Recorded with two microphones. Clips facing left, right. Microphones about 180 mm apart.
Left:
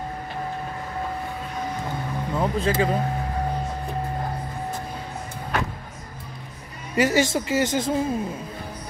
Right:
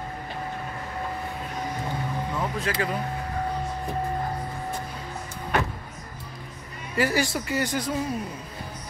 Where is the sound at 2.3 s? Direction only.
30° left (ahead or behind).